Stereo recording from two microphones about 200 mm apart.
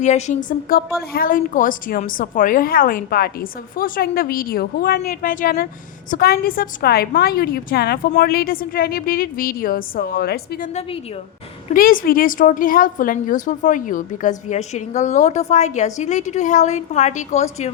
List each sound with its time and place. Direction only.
0.0 s a woman's voice: 35° left (ahead or behind); by 10.7 s 50° left (ahead or behind)
11.7 s a woman's voice: 45° left (ahead or behind)